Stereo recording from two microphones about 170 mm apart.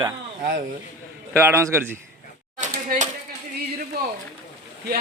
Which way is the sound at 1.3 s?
15° right (ahead or behind).